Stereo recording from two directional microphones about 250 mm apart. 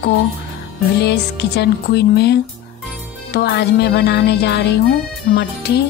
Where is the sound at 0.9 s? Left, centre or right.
Left.